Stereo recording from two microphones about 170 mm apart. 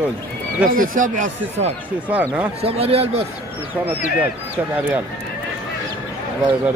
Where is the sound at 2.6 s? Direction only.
35° right (ahead or behind).